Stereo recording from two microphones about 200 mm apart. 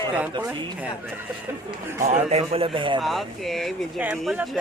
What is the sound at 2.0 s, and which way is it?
A man's voice, 35° right (ahead or behind).